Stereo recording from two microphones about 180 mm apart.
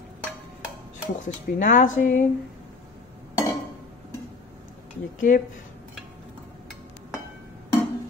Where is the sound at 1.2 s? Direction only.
45° left (ahead or behind).